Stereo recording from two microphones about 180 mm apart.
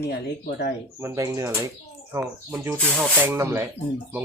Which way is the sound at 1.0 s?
15° right (ahead or behind).